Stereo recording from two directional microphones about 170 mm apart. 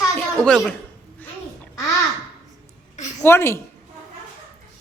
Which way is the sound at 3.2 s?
15° left (ahead or behind).